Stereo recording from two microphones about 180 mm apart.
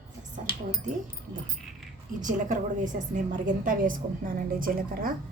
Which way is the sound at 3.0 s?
45° right (ahead or behind).